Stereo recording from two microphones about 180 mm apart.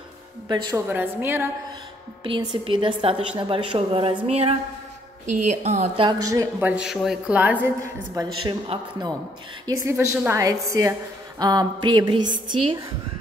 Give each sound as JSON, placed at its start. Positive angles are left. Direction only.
{"t": 0.5, "sound": "a woman's voice", "side_deg": -25}
{"t": 0.8, "sound": "a woman's voice", "side_deg": -10}
{"t": 2.2, "sound": "a woman's voice", "side_deg": -25}
{"t": 6.0, "sound": "a woman's voice", "side_deg": -20}
{"t": 6.7, "sound": "a woman's voice", "side_deg": -5}
{"t": 9.7, "sound": "a woman's voice", "side_deg": -15}